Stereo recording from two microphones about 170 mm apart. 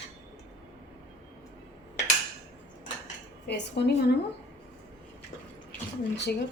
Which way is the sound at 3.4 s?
80° left.